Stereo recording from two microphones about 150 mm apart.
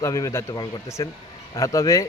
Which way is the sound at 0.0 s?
20° left (ahead or behind).